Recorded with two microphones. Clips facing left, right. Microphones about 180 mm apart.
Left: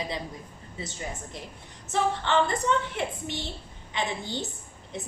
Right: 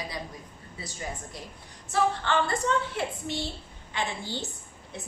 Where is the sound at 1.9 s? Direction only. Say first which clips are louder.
Even; 20° left (ahead or behind).